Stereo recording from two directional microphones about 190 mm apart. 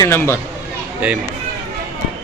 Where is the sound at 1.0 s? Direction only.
5° right (ahead or behind).